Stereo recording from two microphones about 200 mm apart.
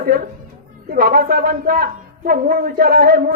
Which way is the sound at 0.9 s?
50° right (ahead or behind).